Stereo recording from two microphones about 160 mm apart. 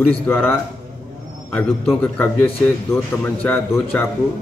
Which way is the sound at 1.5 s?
10° left (ahead or behind).